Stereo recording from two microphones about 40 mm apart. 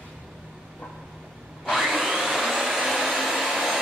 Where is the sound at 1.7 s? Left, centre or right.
Centre.